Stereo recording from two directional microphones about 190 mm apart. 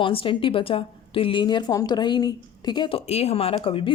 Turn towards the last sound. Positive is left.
turn(degrees=30)  # may be behind; listen again after turning